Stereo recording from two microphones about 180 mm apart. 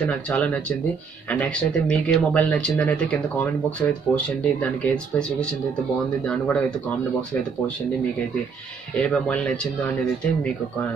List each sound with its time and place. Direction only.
0.0 s speech: 5° left (ahead or behind)
9.0 s speech: 5° left (ahead or behind)